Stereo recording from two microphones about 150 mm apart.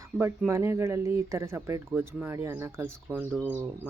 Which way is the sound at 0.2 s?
20° right (ahead or behind).